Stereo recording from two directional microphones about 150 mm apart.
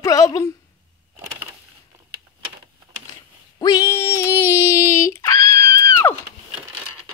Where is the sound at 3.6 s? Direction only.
25° left (ahead or behind).